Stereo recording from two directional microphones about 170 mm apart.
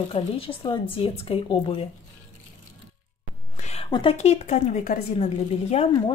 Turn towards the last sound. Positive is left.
turn(degrees=35)  # may be behind; listen again after turning